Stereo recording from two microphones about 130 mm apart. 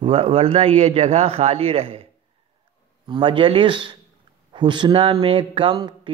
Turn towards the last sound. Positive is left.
turn(degrees=-35)  # may be behind; listen again after turning